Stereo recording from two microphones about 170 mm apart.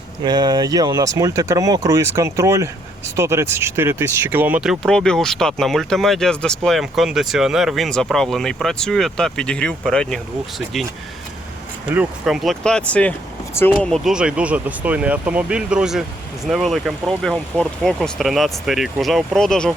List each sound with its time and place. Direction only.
0.2 s speech: 25° right (ahead or behind); by 10.2 s 5° left (ahead or behind)
11.9 s speech: 5° right (ahead or behind); by 13.7 s 15° left (ahead or behind)
13.9 s speech: 5° right (ahead or behind)